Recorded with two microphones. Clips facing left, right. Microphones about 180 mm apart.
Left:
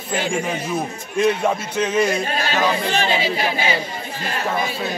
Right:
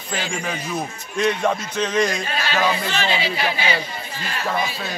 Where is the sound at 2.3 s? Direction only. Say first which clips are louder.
Left 1 dB; 45° left (ahead or behind).